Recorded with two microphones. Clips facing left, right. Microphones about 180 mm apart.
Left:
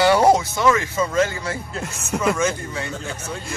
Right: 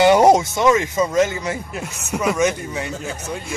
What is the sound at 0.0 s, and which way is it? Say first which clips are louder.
Speech: right 3 dB; 20° right (ahead or behind).